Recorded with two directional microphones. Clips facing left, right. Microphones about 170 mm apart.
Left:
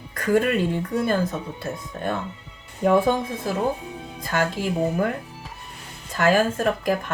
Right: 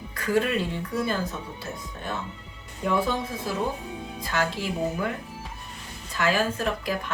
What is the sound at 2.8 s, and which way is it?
Speech, 50° left (ahead or behind).